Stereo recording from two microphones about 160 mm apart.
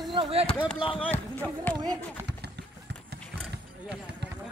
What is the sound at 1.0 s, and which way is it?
Speech, 10° left (ahead or behind).